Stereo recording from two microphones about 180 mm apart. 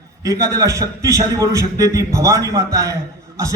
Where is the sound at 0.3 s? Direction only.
20° right (ahead or behind).